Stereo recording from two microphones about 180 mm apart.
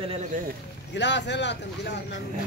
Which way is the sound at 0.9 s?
75° left (ahead or behind).